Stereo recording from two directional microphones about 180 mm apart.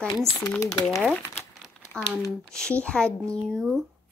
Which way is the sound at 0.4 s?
15° left (ahead or behind).